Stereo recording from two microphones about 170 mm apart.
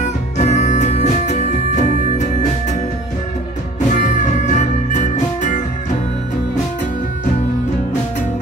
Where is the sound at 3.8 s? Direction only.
45° left (ahead or behind).